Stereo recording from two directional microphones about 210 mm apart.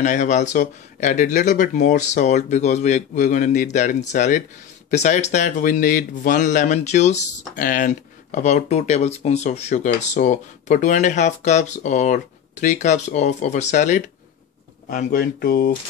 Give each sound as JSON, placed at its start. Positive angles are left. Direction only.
{"t": 0.0, "sound": "speech", "side_deg": 35}